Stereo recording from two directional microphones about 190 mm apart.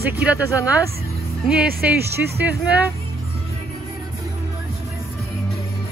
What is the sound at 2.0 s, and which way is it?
Speech, 60° right (ahead or behind).